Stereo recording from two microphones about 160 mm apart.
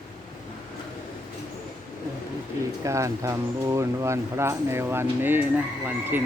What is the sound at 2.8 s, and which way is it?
Speech, 20° right (ahead or behind).